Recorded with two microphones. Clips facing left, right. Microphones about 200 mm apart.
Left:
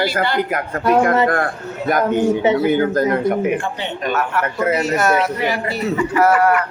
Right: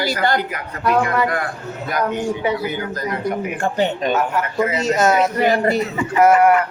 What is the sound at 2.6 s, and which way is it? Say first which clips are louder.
Speech: left 9 dB; 50° left (ahead or behind).